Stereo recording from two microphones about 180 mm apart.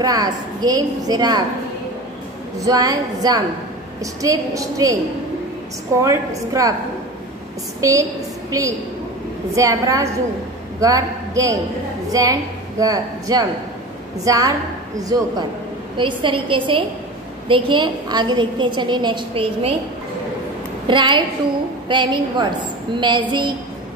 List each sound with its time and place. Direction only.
0.0 s a woman's voice: 20° right (ahead or behind)
2.6 s a woman's voice: 20° right (ahead or behind)
5.9 s a woman's voice: 20° right (ahead or behind)
7.8 s a woman's voice: 20° right (ahead or behind)
20.8 s a woman's voice: 25° right (ahead or behind)